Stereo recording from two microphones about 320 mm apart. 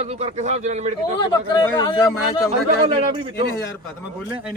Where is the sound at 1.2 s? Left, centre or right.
Centre.